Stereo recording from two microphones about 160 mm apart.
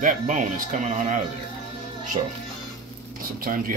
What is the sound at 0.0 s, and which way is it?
Speech, 55° right (ahead or behind).